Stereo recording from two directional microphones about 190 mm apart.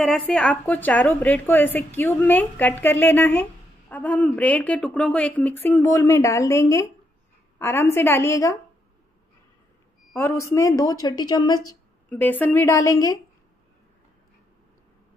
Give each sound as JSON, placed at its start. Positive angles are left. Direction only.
{"t": 0.0, "sound": "a woman's voice", "side_deg": 5}
{"t": 10.1, "sound": "speech", "side_deg": 15}
{"t": 12.1, "sound": "a woman's voice", "side_deg": 10}